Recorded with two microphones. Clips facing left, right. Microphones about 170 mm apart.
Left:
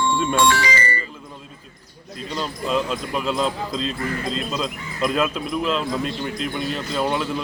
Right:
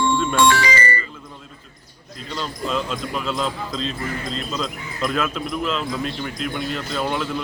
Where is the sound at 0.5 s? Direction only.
70° right (ahead or behind).